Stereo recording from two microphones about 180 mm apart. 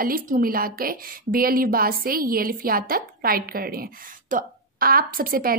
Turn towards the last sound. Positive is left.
turn(degrees=-55)  # may be behind; listen again after turning